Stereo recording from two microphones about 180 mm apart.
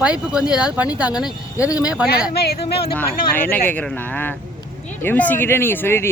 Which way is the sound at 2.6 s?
30° left (ahead or behind).